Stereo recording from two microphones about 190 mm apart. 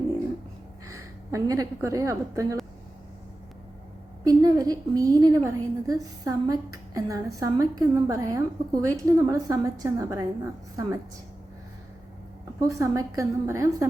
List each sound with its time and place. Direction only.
0.9 s a woman's voice: 15° right (ahead or behind)
4.3 s a woman's voice: 20° right (ahead or behind)
12.5 s a woman's voice: 15° right (ahead or behind)